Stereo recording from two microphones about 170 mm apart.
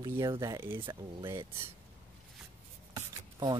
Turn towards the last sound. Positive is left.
turn(degrees=-20)  # may be behind; listen again after turning